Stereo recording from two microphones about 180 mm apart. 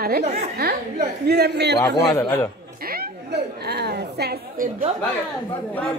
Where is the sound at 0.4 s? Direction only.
60° right (ahead or behind).